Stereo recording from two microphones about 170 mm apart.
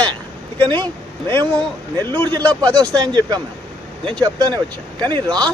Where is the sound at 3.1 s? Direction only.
25° right (ahead or behind).